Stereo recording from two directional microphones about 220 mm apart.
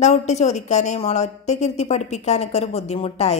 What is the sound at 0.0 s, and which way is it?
A woman's voice, 30° left (ahead or behind).